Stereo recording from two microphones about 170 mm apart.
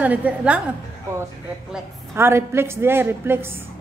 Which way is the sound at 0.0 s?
10° right (ahead or behind).